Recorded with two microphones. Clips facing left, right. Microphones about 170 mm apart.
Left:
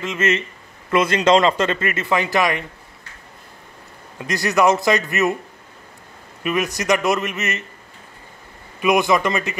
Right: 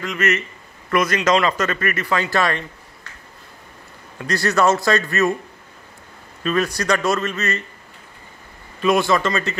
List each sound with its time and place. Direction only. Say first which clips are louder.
0.0 s a man's voice: left 1 dB; 25° left (ahead or behind)
4.2 s a man's voice: left 1 dB; 15° left (ahead or behind)
6.4 s a man's voice: right 1 dB; 15° left (ahead or behind)
8.7 s a man's voice: even; 15° left (ahead or behind)